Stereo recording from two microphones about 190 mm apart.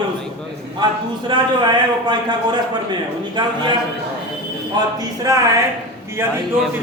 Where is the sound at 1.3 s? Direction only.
25° right (ahead or behind).